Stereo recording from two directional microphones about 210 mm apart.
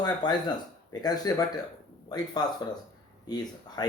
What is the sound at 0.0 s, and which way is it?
A man's voice, 20° left (ahead or behind).